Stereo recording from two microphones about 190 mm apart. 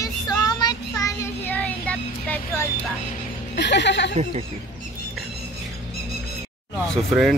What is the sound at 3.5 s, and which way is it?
Speech, 65° left (ahead or behind).